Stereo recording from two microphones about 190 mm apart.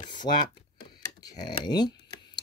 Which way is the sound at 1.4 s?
20° left (ahead or behind).